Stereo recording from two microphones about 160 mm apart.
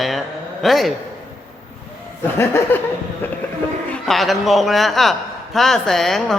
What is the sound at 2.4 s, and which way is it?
Laughter, 15° left (ahead or behind).